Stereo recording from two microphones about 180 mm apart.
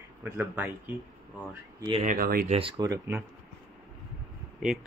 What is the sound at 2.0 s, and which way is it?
Speech, 55° right (ahead or behind).